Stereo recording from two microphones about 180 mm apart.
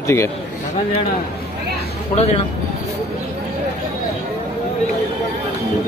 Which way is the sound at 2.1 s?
35° left (ahead or behind).